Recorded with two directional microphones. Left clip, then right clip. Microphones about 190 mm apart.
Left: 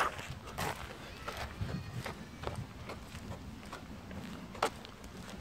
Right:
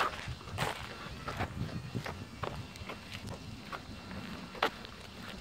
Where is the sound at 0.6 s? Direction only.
15° left (ahead or behind).